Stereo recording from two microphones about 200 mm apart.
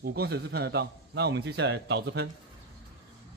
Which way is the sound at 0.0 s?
50° right (ahead or behind).